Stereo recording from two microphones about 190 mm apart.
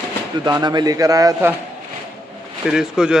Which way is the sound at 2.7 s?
5° right (ahead or behind).